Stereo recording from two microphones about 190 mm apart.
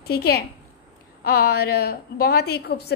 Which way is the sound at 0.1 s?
55° left (ahead or behind).